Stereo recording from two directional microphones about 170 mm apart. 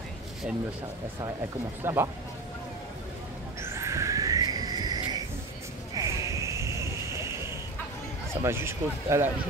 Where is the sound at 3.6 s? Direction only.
15° right (ahead or behind).